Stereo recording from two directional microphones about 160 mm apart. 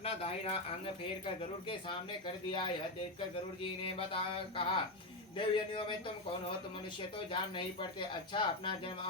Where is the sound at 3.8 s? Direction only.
35° left (ahead or behind).